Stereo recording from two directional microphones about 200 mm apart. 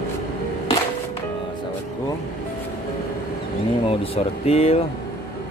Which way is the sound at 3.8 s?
30° left (ahead or behind).